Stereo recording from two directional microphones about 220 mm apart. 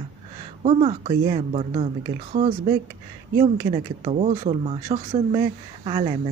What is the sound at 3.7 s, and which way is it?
Speech, 25° right (ahead or behind).